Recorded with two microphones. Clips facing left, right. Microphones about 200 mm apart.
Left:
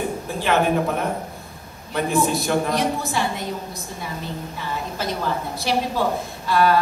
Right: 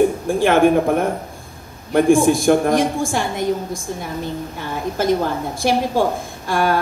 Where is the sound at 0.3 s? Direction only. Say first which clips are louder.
Right 4 dB; 50° right (ahead or behind).